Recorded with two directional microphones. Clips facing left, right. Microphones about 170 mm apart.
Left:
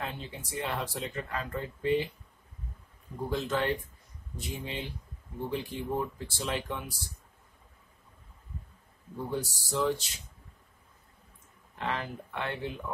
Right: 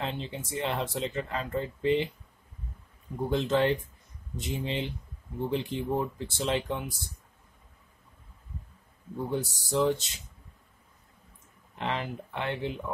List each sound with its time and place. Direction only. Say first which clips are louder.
0.0 s speech: right 4 dB; 20° right (ahead or behind)
3.3 s speech: right 5 dB; 25° right (ahead or behind)
9.3 s speech: right 3 dB; 20° right (ahead or behind)
11.8 s speech: right 2 dB; 20° right (ahead or behind)